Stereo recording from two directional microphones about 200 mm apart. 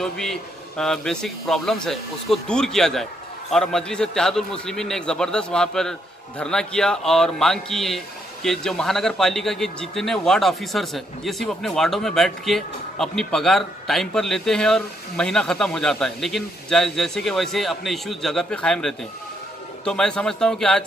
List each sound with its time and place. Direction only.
0.0 s a man's voice: centre (ahead or behind)